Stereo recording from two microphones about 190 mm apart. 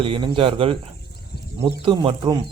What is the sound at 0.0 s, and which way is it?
Speech, 30° right (ahead or behind).